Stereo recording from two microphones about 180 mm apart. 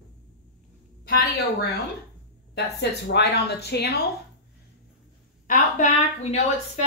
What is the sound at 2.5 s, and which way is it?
A woman's voice, 70° left (ahead or behind).